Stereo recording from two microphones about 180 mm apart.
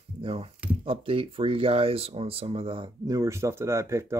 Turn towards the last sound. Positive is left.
turn(degrees=-15)  # may be behind; listen again after turning